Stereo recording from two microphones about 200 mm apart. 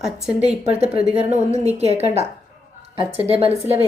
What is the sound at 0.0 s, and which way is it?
Speech, 5° right (ahead or behind).